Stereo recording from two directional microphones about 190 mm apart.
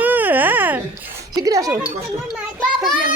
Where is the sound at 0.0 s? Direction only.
10° right (ahead or behind).